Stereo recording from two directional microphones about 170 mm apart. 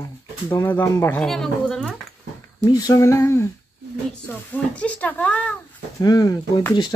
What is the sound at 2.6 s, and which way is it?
Speech, 20° left (ahead or behind).